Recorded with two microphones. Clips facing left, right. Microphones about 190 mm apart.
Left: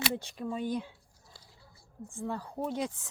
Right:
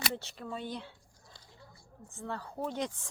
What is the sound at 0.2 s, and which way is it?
Speech, 15° left (ahead or behind).